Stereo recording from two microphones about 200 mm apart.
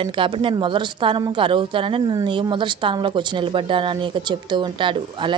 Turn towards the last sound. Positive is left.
turn(degrees=-25)  # may be behind; listen again after turning